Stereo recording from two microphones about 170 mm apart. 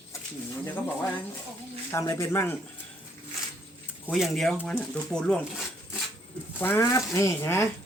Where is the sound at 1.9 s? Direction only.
15° left (ahead or behind).